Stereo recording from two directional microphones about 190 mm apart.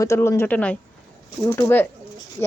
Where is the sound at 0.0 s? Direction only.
15° left (ahead or behind).